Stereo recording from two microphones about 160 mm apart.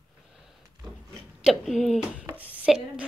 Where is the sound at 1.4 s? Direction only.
Centre (ahead or behind).